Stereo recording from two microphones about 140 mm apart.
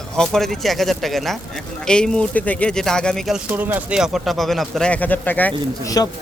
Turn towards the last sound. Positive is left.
turn(degrees=25)  # may be behind; listen again after turning